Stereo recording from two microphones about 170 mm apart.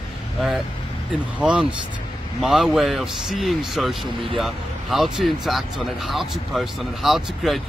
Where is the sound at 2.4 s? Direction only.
Centre (ahead or behind).